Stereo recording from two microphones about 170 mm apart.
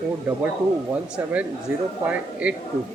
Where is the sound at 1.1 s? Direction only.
10° right (ahead or behind).